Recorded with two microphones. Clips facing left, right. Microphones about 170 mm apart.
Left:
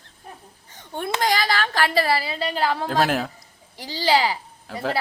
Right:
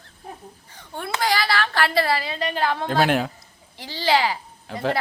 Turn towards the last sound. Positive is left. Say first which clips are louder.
# right 2 dB
turn(degrees=5)  # may be behind; listen again after turning